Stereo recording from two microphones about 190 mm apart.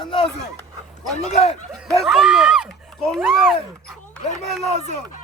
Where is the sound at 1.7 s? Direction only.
Centre (ahead or behind).